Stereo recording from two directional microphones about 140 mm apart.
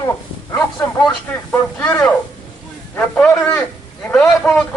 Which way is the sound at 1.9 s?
5° left (ahead or behind).